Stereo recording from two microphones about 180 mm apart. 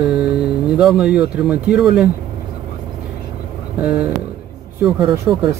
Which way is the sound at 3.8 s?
5° right (ahead or behind).